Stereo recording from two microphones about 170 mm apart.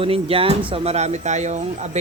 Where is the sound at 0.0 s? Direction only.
35° right (ahead or behind).